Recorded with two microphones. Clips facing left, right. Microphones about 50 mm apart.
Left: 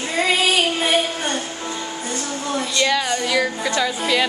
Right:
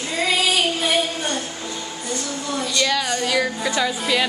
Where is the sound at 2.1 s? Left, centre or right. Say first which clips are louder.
Left 1 dB; left.